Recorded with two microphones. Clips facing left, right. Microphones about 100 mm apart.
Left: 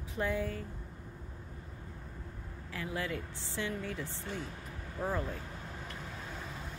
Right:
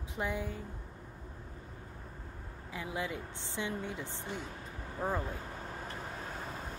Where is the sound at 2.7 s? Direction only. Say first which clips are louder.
Left 1 dB; 15° right (ahead or behind).